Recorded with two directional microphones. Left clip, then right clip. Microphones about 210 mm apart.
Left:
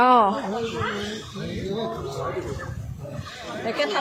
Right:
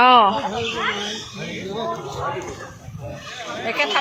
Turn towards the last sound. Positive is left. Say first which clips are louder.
# right 4 dB
turn(degrees=50)  # may be behind; listen again after turning